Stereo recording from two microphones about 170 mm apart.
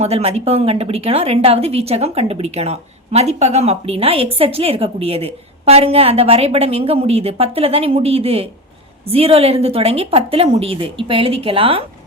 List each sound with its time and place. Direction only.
0.0 s speech: 35° right (ahead or behind)